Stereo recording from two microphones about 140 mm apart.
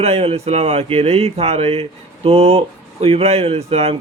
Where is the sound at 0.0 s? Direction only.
45° right (ahead or behind).